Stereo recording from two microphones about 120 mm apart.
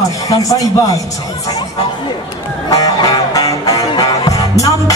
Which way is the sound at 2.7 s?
30° left (ahead or behind).